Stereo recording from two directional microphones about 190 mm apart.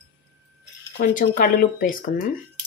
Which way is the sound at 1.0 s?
45° left (ahead or behind).